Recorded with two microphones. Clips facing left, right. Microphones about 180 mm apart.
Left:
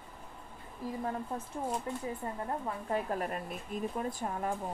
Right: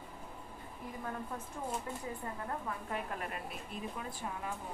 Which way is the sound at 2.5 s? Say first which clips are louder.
Left 6 dB; 35° left (ahead or behind).